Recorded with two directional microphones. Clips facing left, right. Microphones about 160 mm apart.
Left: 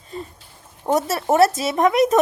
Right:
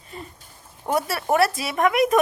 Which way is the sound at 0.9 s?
25° left (ahead or behind).